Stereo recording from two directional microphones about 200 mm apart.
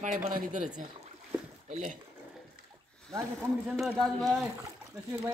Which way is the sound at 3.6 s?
Centre (ahead or behind).